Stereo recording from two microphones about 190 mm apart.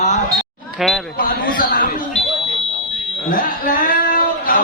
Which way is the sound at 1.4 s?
50° left (ahead or behind).